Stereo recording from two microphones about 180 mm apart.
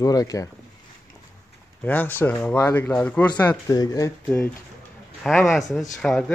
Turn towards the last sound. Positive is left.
turn(degrees=5)  # may be behind; listen again after turning